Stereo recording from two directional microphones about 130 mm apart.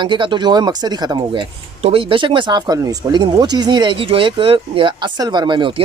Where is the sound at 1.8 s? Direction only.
45° right (ahead or behind).